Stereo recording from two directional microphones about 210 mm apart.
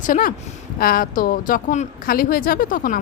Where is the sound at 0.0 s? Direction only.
40° left (ahead or behind).